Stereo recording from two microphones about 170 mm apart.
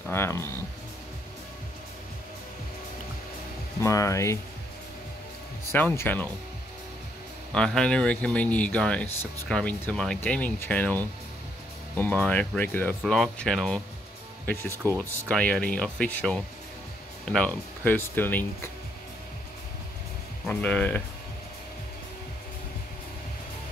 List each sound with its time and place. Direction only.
0.1 s speech: 15° left (ahead or behind)
3.8 s speech: 20° left (ahead or behind)
5.7 s speech: 10° left (ahead or behind)
7.5 s speech: 5° left (ahead or behind)
14.4 s speech: 10° left (ahead or behind)
20.4 s speech: 10° left (ahead or behind)